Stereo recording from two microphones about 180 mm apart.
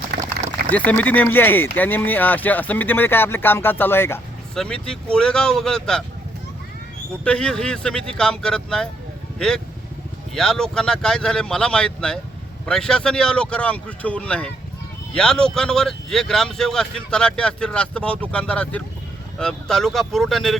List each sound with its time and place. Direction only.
0.1 s a sound: 65° right (ahead or behind)
0.7 s speech: 10° left (ahead or behind)
7.3 s speech: 5° left (ahead or behind)
10.3 s speech: 5° left (ahead or behind)